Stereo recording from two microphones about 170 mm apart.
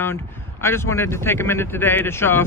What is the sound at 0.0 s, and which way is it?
A man's voice, 15° left (ahead or behind).